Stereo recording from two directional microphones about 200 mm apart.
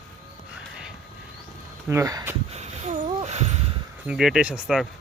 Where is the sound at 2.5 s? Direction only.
35° right (ahead or behind).